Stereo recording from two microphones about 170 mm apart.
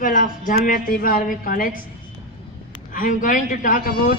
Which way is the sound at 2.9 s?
55° left (ahead or behind).